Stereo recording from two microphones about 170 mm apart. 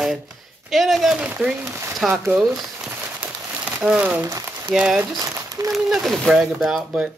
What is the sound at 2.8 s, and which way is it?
Crumpling, 10° right (ahead or behind).